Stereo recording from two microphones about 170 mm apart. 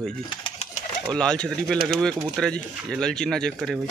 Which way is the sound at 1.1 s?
5° left (ahead or behind).